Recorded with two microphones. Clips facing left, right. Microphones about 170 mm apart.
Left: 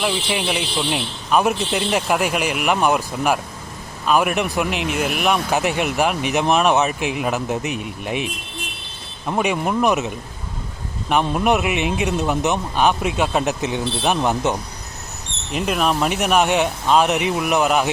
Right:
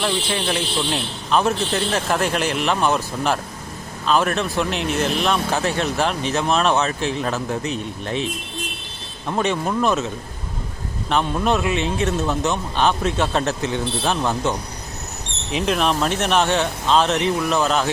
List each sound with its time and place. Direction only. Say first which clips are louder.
0.3 s speech: even; 10° left (ahead or behind)
4.7 s speech: right 1 dB; 5° left (ahead or behind)
11.1 s speech: left 2 dB; 15° left (ahead or behind)
15.5 s speech: even; 5° left (ahead or behind)